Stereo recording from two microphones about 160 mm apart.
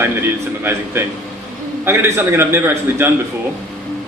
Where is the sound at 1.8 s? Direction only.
15° right (ahead or behind).